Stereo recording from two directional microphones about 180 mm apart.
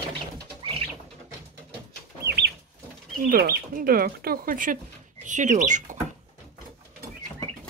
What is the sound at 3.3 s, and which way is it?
Speech, 55° right (ahead or behind).